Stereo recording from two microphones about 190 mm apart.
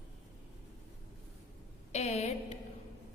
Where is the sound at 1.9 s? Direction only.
35° left (ahead or behind).